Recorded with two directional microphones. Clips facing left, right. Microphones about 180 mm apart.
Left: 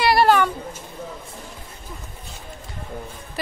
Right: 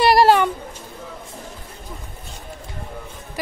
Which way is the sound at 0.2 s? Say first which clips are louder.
Even; 30° right (ahead or behind).